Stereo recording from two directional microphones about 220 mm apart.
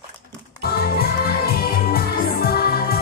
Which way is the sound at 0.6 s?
45° left (ahead or behind).